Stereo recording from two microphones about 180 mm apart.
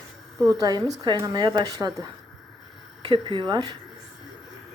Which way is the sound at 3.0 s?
25° right (ahead or behind).